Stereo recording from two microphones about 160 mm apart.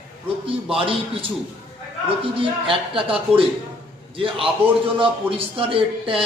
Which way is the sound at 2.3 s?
35° right (ahead or behind).